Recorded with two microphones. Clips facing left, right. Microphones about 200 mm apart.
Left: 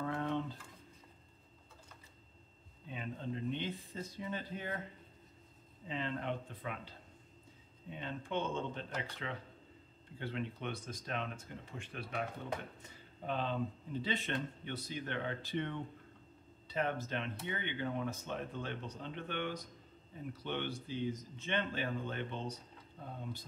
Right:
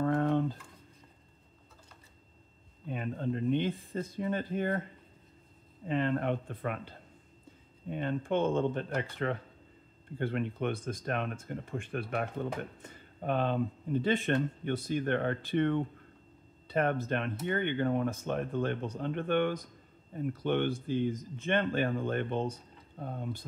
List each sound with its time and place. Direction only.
0.0 s a sound: 50° right (ahead or behind)
2.9 s speech: 55° right (ahead or behind)
5.9 s speech: 55° right (ahead or behind)